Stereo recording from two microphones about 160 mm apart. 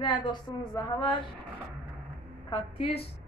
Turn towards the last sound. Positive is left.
turn(degrees=35)  # may be behind; listen again after turning